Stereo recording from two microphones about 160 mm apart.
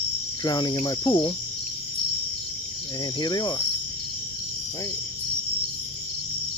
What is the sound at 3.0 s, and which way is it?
Cricket, 25° left (ahead or behind).